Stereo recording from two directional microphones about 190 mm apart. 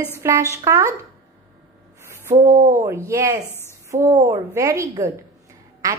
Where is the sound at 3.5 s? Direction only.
15° left (ahead or behind).